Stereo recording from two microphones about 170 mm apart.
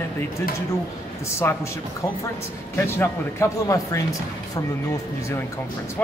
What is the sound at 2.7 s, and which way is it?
Speech, 15° left (ahead or behind).